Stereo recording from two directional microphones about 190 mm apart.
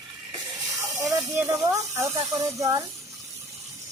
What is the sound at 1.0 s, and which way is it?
Speech, 15° right (ahead or behind).